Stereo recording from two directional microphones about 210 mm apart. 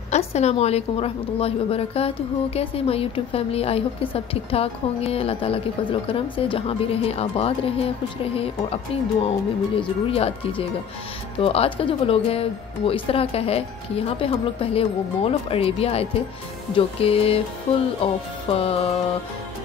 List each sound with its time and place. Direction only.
0.1 s a woman's voice: 30° left (ahead or behind)
9.8 s a woman's voice: 25° left (ahead or behind)